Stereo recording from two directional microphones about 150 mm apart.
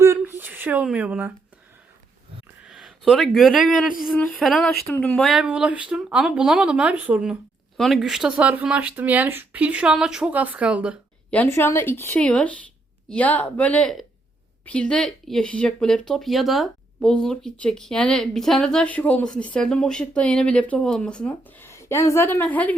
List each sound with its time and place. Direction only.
0.0 s a sound: 15° right (ahead or behind)
2.6 s speech: 5° right (ahead or behind)
11.3 s speech: 15° left (ahead or behind)
21.7 s a woman's voice: 20° left (ahead or behind)